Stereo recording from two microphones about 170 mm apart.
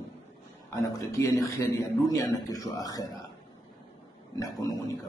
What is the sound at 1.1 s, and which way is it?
A man's voice, 20° left (ahead or behind).